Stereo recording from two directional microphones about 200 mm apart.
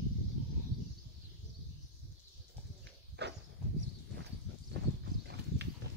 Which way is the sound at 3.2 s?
55° right (ahead or behind).